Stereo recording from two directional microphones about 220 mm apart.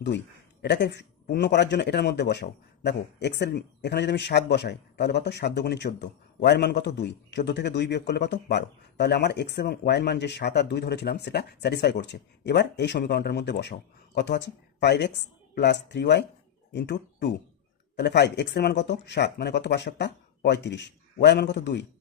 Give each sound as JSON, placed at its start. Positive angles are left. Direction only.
{"t": 0.6, "sound": "speech", "side_deg": 50}